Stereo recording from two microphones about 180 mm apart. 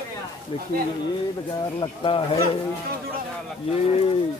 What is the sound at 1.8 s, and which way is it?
Speech, 30° left (ahead or behind).